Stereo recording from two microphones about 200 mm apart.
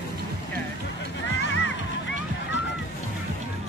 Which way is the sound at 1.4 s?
65° left (ahead or behind).